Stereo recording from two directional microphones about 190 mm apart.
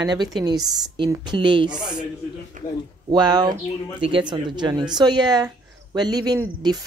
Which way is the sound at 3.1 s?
20° right (ahead or behind).